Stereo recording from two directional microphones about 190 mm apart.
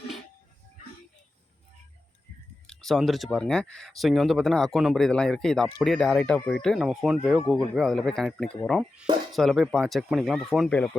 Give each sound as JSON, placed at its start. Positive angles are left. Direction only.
{"t": 2.6, "sound": "speech", "side_deg": 0}